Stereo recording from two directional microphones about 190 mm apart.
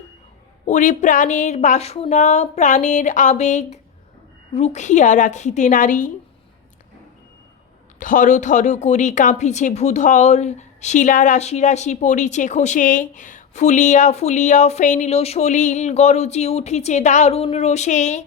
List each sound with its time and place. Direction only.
0.6 s a woman's voice: 40° left (ahead or behind)
7.9 s a woman's voice: 45° left (ahead or behind)